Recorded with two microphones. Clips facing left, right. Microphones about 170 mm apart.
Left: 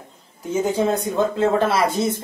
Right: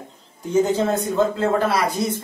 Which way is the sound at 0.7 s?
15° left (ahead or behind).